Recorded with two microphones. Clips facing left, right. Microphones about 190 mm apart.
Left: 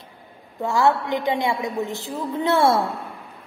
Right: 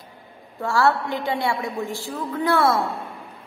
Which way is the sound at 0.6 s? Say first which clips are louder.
Left 1 dB; 20° left (ahead or behind).